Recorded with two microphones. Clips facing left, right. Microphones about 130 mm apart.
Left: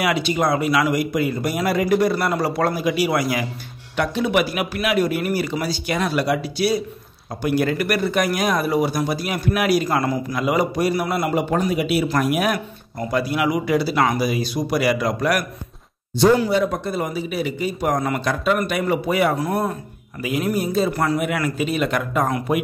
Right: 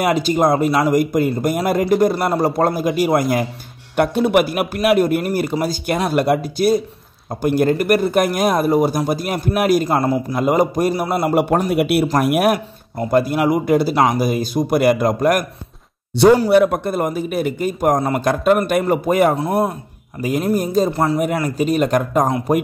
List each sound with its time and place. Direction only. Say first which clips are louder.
0.0 s speech: right 4 dB; 45° right (ahead or behind)
10.0 s a man's voice: right 4 dB; 35° right (ahead or behind)
10.4 s a man's voice: right 4 dB; 45° right (ahead or behind)
11.3 s speech: right 6 dB; 60° right (ahead or behind)
13.1 s speech: right 5 dB; 45° right (ahead or behind)
16.4 s speech: right 7 dB; 60° right (ahead or behind); by 19.3 s 45° right (ahead or behind)
19.3 s speech: right 4 dB; 25° right (ahead or behind)
20.2 s a man's voice: right 4 dB; 40° right (ahead or behind)
20.9 s speech: right 3 dB; 25° right (ahead or behind)
21.5 s a man's voice: right 5 dB; 40° right (ahead or behind)